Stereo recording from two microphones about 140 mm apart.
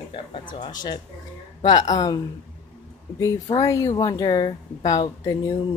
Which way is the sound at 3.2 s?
25° left (ahead or behind).